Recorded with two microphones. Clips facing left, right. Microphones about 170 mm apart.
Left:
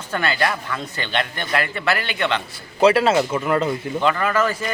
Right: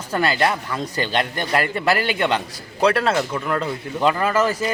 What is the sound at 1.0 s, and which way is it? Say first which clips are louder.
A man's voice: right 3 dB; 40° right (ahead or behind).